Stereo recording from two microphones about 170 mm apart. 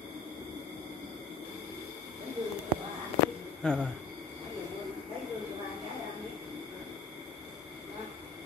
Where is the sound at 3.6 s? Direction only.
5° left (ahead or behind).